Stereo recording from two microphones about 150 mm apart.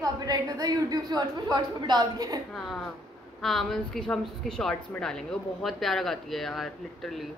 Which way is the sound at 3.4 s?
Centre (ahead or behind).